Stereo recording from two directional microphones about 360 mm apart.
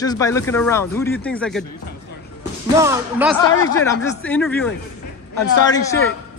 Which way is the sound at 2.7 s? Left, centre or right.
Centre.